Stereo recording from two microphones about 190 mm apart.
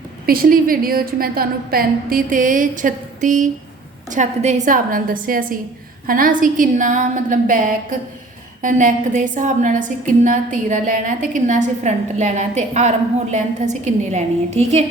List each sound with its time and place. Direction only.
0.3 s a woman's voice: 50° right (ahead or behind)